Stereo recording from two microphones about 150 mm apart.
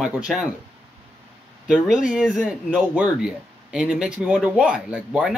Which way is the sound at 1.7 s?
5° right (ahead or behind).